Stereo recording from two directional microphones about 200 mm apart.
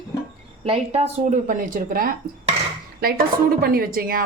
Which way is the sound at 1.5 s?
40° right (ahead or behind).